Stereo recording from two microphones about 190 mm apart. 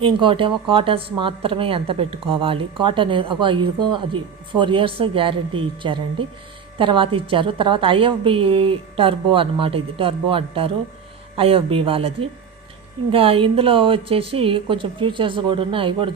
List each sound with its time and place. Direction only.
0.0 s speech: 25° right (ahead or behind)